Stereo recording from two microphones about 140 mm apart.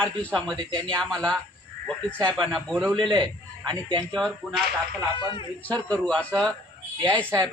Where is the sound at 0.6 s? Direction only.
35° right (ahead or behind).